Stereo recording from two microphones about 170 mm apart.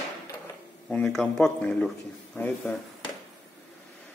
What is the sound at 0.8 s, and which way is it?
Speech, 5° left (ahead or behind).